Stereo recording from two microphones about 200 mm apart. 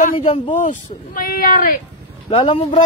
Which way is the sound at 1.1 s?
45° left (ahead or behind).